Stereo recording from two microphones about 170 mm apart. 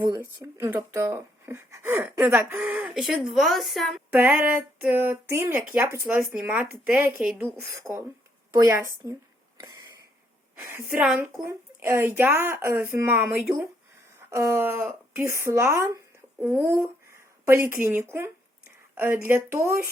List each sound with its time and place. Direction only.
0.3 s a woman's voice: 15° right (ahead or behind); by 4.0 s centre (ahead or behind)
4.1 s speech: 10° right (ahead or behind)
9.6 s a sound: 20° right (ahead or behind)
10.7 s speech: 15° right (ahead or behind)
11.3 s speech: 15° right (ahead or behind)